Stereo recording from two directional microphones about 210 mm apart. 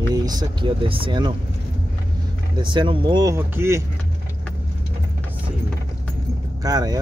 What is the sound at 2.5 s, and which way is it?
Speech, 20° right (ahead or behind).